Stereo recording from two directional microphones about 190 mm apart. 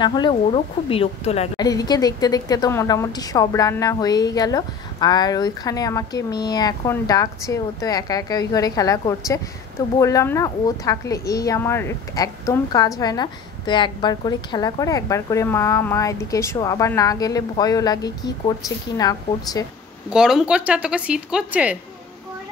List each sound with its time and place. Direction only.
0.0 s a woman's voice: 25° left (ahead or behind)
1.6 s a woman's voice: 20° left (ahead or behind)
20.1 s a woman's voice: 5° right (ahead or behind)